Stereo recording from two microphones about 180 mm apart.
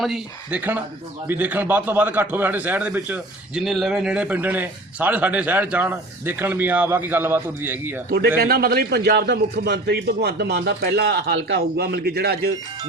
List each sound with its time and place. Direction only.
0.0 s a man's voice: 5° right (ahead or behind)
8.4 s a man's voice: 60° right (ahead or behind)